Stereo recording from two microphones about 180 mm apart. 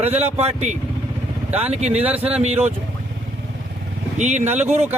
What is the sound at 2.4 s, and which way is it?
Speech, 40° right (ahead or behind).